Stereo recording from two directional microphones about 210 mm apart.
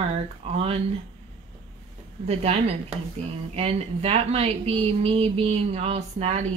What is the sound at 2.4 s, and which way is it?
Speech, 30° right (ahead or behind).